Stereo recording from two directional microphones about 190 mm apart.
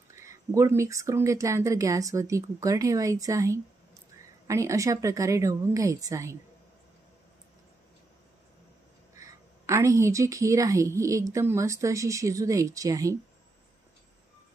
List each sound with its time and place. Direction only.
0.1 s a woman's voice: 15° right (ahead or behind)
9.1 s a woman's voice: 15° right (ahead or behind)